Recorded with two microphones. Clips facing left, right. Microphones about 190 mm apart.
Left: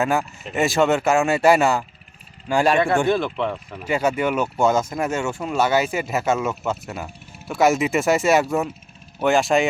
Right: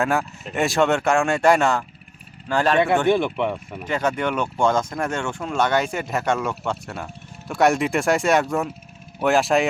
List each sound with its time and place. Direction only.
0.0 s speech: centre (ahead or behind)
3.1 s speech: 15° right (ahead or behind)
3.8 s speech: 10° left (ahead or behind)